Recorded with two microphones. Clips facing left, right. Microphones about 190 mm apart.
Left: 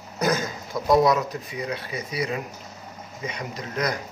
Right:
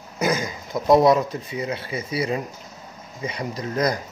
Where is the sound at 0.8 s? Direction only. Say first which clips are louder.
Right 3 dB; 25° right (ahead or behind).